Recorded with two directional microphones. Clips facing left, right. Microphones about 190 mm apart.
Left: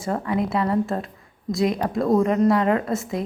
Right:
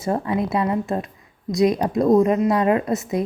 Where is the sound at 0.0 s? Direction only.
25° right (ahead or behind).